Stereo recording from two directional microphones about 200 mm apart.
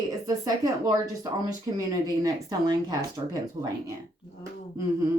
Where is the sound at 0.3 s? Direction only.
20° right (ahead or behind).